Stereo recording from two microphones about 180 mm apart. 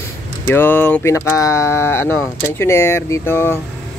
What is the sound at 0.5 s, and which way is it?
Speech, 10° left (ahead or behind).